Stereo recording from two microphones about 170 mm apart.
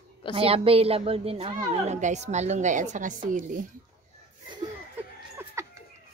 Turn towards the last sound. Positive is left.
turn(degrees=-15)  # may be behind; listen again after turning